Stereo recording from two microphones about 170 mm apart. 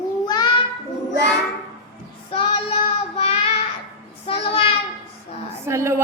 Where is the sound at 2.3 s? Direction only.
35° left (ahead or behind).